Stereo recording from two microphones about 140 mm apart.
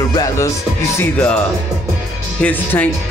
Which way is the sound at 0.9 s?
10° left (ahead or behind).